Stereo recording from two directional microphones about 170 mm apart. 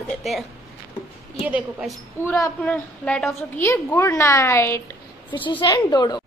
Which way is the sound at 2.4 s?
10° left (ahead or behind).